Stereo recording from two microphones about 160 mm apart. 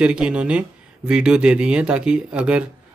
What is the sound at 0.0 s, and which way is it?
Speech, 5° right (ahead or behind).